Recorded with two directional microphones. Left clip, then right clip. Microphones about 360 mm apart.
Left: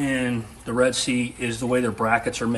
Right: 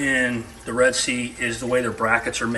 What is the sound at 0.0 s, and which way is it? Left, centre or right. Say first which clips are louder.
Speech: right 4 dB; centre.